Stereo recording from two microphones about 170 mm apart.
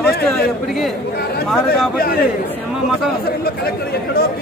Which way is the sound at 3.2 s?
65° left (ahead or behind).